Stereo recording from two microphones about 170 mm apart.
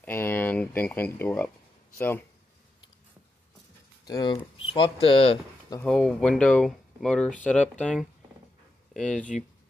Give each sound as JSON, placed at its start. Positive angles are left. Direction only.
{"t": 0.0, "sound": "speech", "side_deg": 15}
{"t": 4.0, "sound": "speech", "side_deg": 25}
{"t": 5.9, "sound": "speech", "side_deg": 5}